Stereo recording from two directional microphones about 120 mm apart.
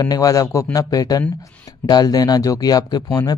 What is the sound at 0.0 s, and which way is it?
A man's voice, 30° left (ahead or behind).